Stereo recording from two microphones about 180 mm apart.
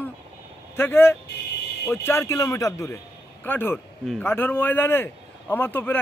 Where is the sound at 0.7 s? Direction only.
10° left (ahead or behind).